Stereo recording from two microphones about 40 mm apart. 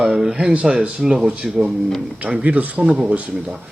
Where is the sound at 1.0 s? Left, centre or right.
Centre.